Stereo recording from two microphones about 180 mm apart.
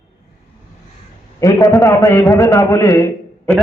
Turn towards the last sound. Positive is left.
turn(degrees=10)  # may be behind; listen again after turning